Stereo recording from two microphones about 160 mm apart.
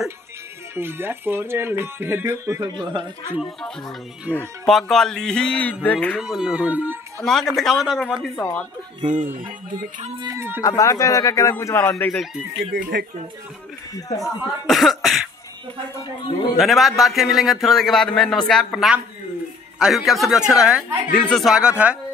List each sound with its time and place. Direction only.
0.7 s speech: 15° right (ahead or behind)
3.3 s a man's voice: 5° left (ahead or behind)
6.2 s speech: 5° right (ahead or behind)
7.2 s speech: centre (ahead or behind)
8.4 s a man's voice: 10° left (ahead or behind)
9.0 s speech: 55° right (ahead or behind)
10.1 s speech: 20° right (ahead or behind)
10.6 s a man's voice: 20° left (ahead or behind)
12.1 s speech: centre (ahead or behind)
12.7 s speech: 65° right (ahead or behind)
14.0 s speech: 20° left (ahead or behind)
14.7 s speech: centre (ahead or behind)
16.5 s speech: centre (ahead or behind)